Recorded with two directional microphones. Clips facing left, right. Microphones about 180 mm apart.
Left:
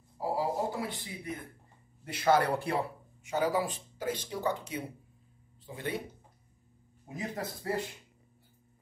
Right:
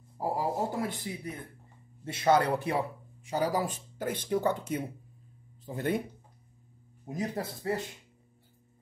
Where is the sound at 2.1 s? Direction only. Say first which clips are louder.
Right 1 dB; 25° right (ahead or behind).